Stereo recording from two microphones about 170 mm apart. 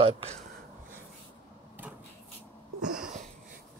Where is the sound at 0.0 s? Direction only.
35° right (ahead or behind).